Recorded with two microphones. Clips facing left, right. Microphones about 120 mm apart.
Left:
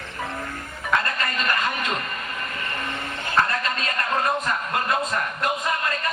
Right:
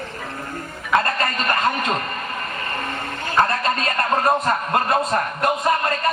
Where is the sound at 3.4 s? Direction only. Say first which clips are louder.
Right 6 dB; 35° right (ahead or behind).